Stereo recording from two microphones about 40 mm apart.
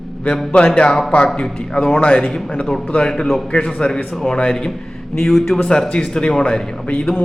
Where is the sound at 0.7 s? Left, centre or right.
Centre.